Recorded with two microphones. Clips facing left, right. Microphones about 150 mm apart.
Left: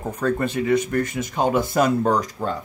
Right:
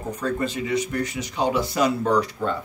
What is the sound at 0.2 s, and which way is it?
Speech, 55° left (ahead or behind).